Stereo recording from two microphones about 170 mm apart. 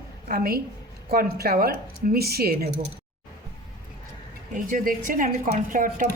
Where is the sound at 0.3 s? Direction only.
60° right (ahead or behind).